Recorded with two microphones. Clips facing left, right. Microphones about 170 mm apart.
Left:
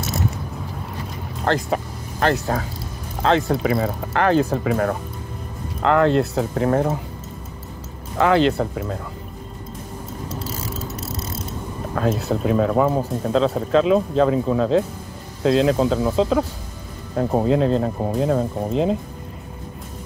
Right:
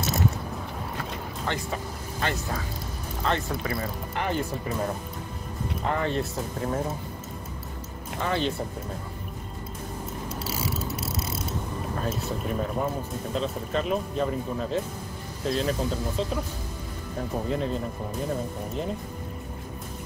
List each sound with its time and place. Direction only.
1.4 s speech: 75° left (ahead or behind)
3.2 s speech: 85° left
5.8 s speech: 85° left
8.2 s speech: 90° left
11.9 s speech: 80° left
17.2 s speech: 65° left (ahead or behind); by 18.9 s 90° left